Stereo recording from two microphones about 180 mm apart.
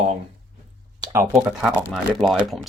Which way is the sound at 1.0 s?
20° right (ahead or behind).